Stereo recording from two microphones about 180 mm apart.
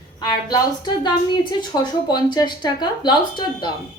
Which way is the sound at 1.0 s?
25° left (ahead or behind).